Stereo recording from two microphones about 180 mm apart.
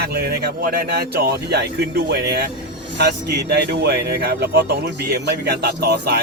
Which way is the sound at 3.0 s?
65° right (ahead or behind).